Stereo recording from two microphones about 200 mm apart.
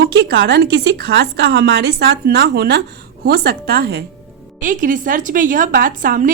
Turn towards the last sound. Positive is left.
turn(degrees=-45)  # may be behind; listen again after turning